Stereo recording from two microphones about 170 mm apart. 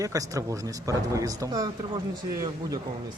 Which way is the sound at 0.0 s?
20° right (ahead or behind).